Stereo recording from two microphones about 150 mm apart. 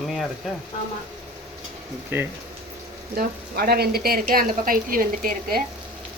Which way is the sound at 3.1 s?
90° right.